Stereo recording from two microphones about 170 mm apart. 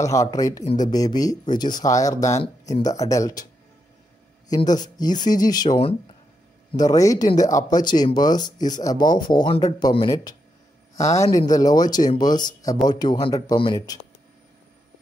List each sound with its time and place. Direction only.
0.0 s speech: 20° left (ahead or behind)
4.6 s speech: 25° left (ahead or behind)